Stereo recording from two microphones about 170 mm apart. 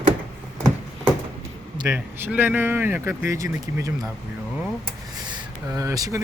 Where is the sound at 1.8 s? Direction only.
10° right (ahead or behind).